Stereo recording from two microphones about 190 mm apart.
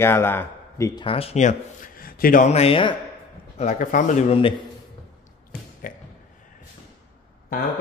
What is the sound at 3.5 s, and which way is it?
Speech, 40° left (ahead or behind).